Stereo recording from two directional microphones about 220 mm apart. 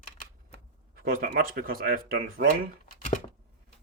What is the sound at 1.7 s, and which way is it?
Speech, 40° right (ahead or behind).